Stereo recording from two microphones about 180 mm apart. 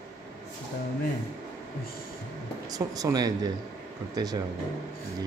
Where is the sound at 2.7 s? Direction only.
20° right (ahead or behind).